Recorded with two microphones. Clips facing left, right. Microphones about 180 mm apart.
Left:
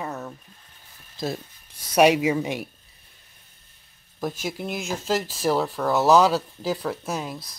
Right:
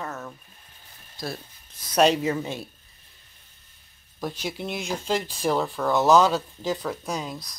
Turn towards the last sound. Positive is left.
turn(degrees=5)  # may be behind; listen again after turning